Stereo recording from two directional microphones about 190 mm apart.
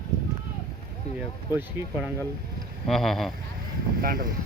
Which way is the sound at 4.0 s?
50° right (ahead or behind).